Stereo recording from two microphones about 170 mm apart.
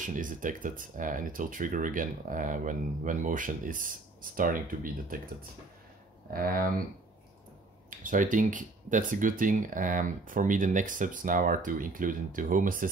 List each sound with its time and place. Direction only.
0.0 s speech: 50° right (ahead or behind)
6.3 s speech: 60° right (ahead or behind)
8.0 s speech: 50° right (ahead or behind)